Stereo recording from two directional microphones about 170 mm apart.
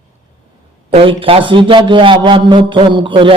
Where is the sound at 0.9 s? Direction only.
35° right (ahead or behind).